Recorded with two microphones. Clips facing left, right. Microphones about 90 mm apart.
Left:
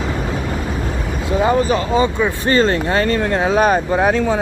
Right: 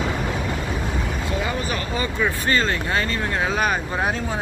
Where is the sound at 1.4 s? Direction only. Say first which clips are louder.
Left 15 dB; 35° left (ahead or behind).